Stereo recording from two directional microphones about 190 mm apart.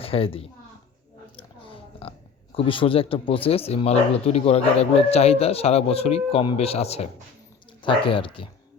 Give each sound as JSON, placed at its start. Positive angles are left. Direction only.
{"t": 0.0, "sound": "speech", "side_deg": 30}
{"t": 1.4, "sound": "a sound", "side_deg": 30}
{"t": 2.6, "sound": "speech", "side_deg": 30}